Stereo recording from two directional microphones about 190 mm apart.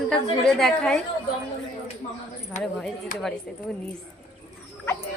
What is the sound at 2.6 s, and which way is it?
Speech, 40° left (ahead or behind).